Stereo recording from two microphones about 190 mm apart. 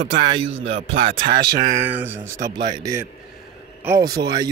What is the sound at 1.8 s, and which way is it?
Speech, 10° right (ahead or behind).